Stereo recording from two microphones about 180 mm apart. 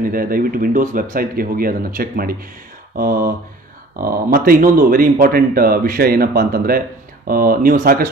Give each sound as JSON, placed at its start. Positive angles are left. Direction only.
{"t": 0.0, "sound": "a man's voice", "side_deg": -55}